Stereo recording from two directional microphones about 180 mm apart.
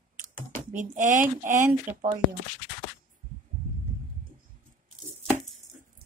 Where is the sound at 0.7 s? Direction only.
45° right (ahead or behind).